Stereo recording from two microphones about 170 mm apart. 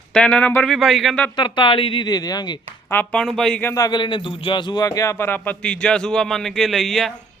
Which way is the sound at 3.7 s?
25° left (ahead or behind).